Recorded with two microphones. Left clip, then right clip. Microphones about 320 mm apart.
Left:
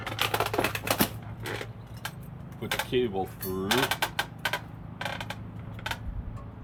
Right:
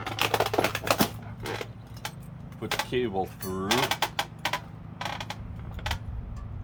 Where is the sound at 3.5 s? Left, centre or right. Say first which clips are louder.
Even; centre.